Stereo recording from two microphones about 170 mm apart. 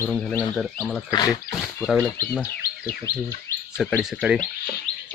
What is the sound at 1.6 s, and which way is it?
Speech, centre (ahead or behind).